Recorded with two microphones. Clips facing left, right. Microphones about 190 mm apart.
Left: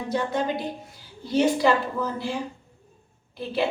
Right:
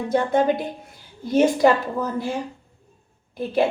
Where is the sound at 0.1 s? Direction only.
50° right (ahead or behind).